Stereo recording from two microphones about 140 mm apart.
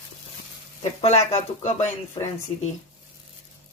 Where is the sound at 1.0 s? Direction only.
50° left (ahead or behind).